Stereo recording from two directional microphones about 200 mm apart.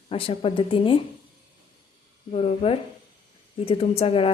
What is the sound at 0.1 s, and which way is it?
Speech, 30° left (ahead or behind).